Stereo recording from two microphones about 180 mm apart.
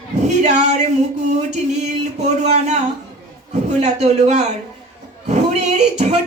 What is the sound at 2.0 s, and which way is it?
Speech, 40° right (ahead or behind).